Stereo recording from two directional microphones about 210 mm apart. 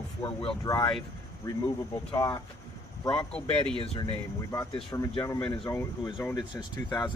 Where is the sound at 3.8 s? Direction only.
25° left (ahead or behind).